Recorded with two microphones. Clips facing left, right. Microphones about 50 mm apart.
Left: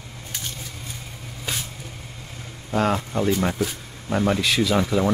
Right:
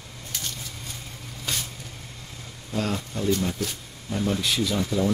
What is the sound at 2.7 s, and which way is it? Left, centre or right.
Speech, left.